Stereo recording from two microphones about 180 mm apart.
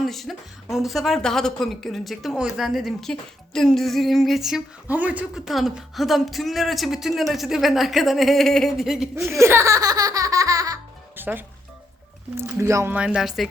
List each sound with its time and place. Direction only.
0.0 s speech: centre (ahead or behind)
9.1 s speech: 15° right (ahead or behind)